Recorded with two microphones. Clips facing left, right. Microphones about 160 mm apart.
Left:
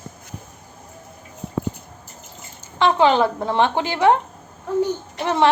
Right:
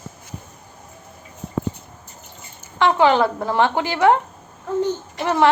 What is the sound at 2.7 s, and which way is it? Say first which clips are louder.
A woman's voice: even; 20° left (ahead or behind).